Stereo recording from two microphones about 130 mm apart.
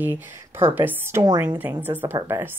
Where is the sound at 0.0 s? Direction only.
15° right (ahead or behind).